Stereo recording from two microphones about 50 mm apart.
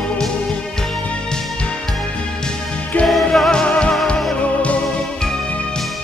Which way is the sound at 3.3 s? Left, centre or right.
Centre.